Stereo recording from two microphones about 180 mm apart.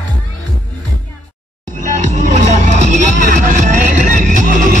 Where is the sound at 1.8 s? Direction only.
40° right (ahead or behind).